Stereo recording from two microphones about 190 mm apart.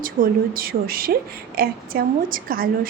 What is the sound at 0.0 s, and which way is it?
A woman's voice, 50° right (ahead or behind).